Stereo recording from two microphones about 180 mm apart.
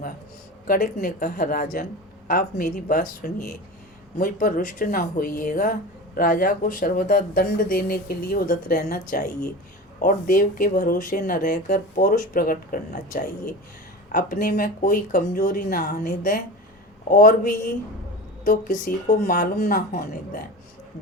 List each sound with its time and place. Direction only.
0.7 s speech: 50° left (ahead or behind)